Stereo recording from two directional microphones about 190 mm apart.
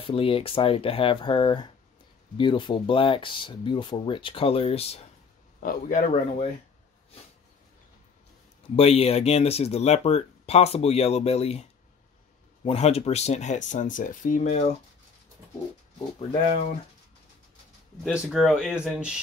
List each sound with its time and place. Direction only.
0.0 s speech: 30° left (ahead or behind)
5.6 s speech: 45° left (ahead or behind)
8.7 s speech: 30° left (ahead or behind)
12.6 s speech: 30° left (ahead or behind)
16.2 s speech: 25° left (ahead or behind)
18.0 s speech: centre (ahead or behind)